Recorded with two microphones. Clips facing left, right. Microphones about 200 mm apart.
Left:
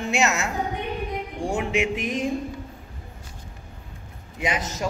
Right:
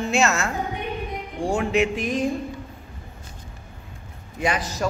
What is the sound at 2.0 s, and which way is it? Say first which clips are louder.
Speech: right 3 dB; 20° left (ahead or behind).